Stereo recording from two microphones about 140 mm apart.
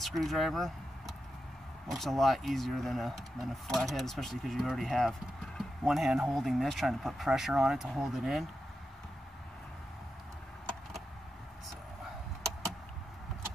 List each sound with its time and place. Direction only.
0.0 s speech: centre (ahead or behind)